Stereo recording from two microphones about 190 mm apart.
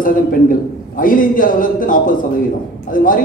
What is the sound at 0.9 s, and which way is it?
A man's voice, 45° left (ahead or behind).